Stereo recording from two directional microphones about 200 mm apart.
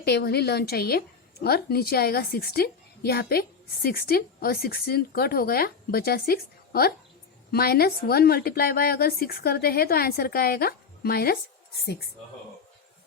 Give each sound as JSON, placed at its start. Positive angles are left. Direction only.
{"t": 0.0, "sound": "a woman's voice", "side_deg": 55}